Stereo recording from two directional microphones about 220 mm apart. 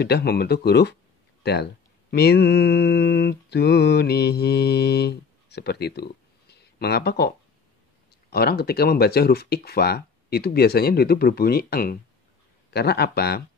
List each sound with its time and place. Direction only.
0.0 s speech: 45° left (ahead or behind)